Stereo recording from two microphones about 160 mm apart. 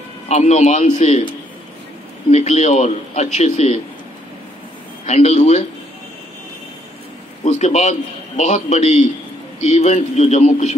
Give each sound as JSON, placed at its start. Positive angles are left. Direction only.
{"t": 0.3, "sound": "speech", "side_deg": 45}
{"t": 2.3, "sound": "speech", "side_deg": 45}
{"t": 5.0, "sound": "speech", "side_deg": 45}
{"t": 7.4, "sound": "speech", "side_deg": 45}